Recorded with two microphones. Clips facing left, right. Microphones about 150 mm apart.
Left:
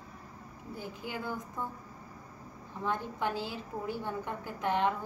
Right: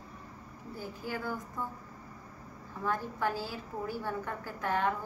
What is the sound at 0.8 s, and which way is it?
Speech, 20° left (ahead or behind).